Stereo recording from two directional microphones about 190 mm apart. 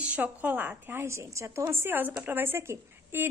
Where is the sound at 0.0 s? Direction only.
10° right (ahead or behind).